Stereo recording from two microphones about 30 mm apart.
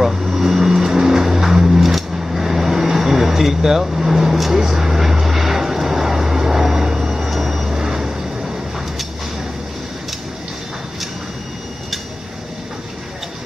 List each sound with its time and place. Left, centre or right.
0.0 s vehicle: centre
7.2 s vehicle: centre
7.7 s vehicle: centre